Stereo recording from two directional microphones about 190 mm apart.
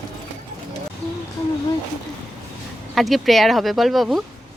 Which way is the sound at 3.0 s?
Centre (ahead or behind).